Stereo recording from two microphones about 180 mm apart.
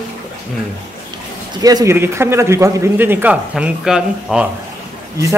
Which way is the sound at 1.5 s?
20° right (ahead or behind).